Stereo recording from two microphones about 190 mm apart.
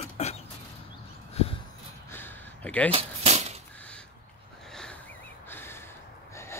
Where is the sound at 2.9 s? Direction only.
35° right (ahead or behind).